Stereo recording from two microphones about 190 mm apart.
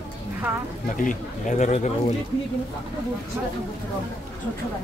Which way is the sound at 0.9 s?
45° left (ahead or behind).